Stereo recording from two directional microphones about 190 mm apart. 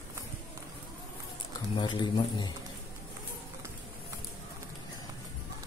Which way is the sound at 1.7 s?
25° left (ahead or behind).